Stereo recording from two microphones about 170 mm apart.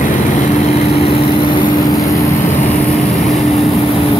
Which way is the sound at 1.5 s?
55° left (ahead or behind).